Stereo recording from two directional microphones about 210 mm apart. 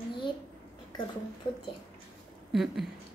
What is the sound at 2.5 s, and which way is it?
Speech, centre (ahead or behind).